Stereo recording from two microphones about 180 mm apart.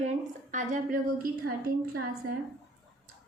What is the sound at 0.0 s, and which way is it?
A woman's voice, 40° right (ahead or behind).